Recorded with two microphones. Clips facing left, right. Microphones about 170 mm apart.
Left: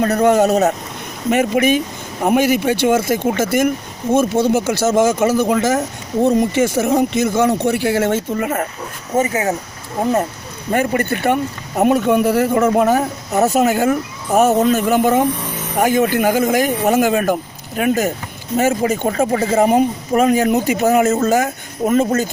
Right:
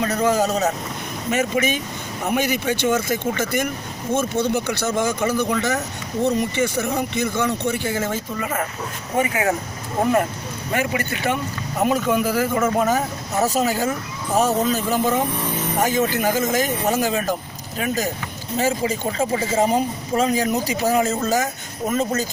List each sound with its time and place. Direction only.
0.0 s speech: 55° left (ahead or behind)
7.9 s speech: 70° left (ahead or behind)
9.2 s speech: 25° left (ahead or behind)
10.7 s speech: 50° left (ahead or behind)